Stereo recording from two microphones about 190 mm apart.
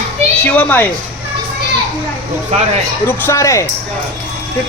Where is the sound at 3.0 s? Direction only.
15° left (ahead or behind).